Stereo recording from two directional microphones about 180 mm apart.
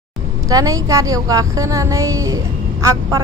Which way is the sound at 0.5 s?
20° right (ahead or behind).